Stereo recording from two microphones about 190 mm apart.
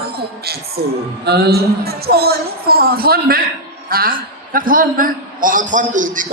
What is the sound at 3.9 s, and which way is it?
A woman's voice, 50° right (ahead or behind).